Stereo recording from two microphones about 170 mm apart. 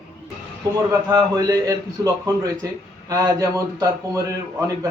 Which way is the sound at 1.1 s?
20° right (ahead or behind).